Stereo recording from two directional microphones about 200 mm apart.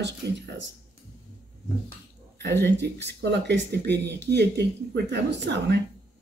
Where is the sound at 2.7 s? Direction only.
60° right (ahead or behind).